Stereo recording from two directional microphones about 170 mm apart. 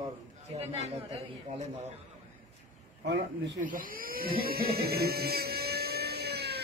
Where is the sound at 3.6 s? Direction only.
55° right (ahead or behind).